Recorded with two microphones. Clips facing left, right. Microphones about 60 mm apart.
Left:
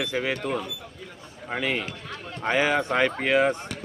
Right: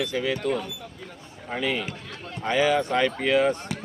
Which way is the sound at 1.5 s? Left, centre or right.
Centre.